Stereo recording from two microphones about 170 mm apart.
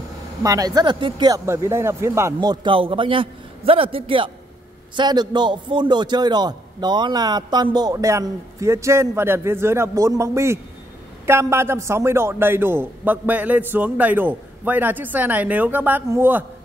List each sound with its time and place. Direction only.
0.4 s a man's voice: 20° right (ahead or behind)